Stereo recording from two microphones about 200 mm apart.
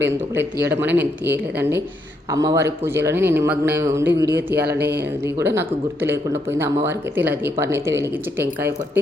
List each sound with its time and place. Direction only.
0.3 s a man's voice: 10° right (ahead or behind)
4.8 s speech: 55° right (ahead or behind)
5.2 s a man's voice: 10° right (ahead or behind)